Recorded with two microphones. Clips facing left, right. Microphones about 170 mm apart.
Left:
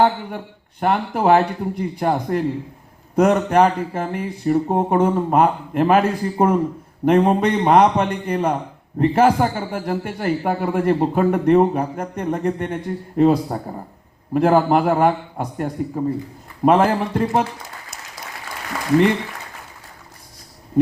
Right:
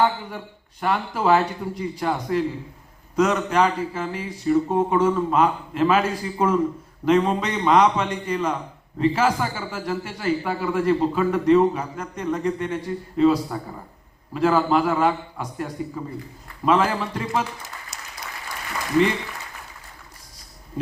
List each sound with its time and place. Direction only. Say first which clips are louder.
0.0 s a man's voice: left 4 dB; 55° left (ahead or behind)
14.3 s a man's voice: left 4 dB; 55° left (ahead or behind)